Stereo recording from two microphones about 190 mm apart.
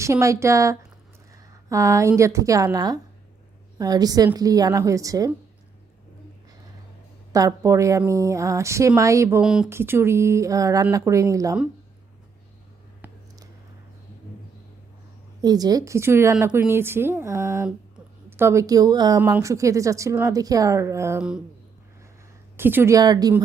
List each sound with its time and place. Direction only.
0.0 s a woman's voice: 15° right (ahead or behind)
7.3 s a woman's voice: 15° right (ahead or behind)
9.4 s a woman's voice: 5° right (ahead or behind)
13.0 s a sound: 10° right (ahead or behind)
15.4 s a woman's voice: 20° right (ahead or behind)
21.2 s speech: 5° right (ahead or behind)
22.5 s a woman's voice: 10° right (ahead or behind)